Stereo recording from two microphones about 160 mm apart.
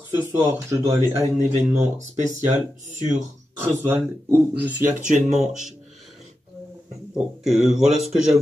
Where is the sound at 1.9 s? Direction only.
50° right (ahead or behind).